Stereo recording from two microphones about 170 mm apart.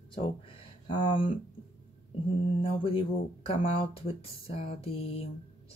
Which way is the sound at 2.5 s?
30° left (ahead or behind).